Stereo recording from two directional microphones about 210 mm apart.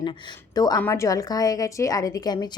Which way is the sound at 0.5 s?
15° left (ahead or behind).